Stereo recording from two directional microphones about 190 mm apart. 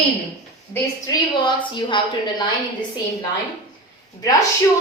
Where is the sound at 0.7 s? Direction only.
20° left (ahead or behind).